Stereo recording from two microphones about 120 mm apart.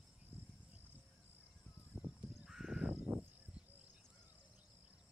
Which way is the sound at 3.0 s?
20° right (ahead or behind).